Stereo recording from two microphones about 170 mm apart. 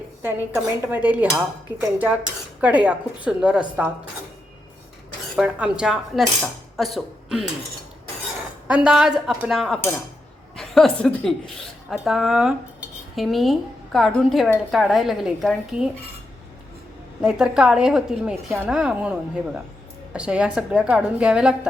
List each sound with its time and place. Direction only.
0.2 s a woman's voice: 15° right (ahead or behind)
5.4 s speech: 5° right (ahead or behind)
8.6 s speech: 5° right (ahead or behind)
17.2 s a woman's voice: 5° right (ahead or behind)
20.1 s speech: 5° right (ahead or behind)